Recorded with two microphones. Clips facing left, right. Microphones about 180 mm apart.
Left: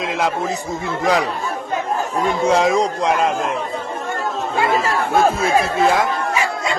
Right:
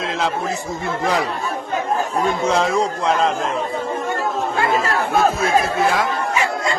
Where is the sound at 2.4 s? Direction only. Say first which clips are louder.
Left 5 dB; 15° left (ahead or behind).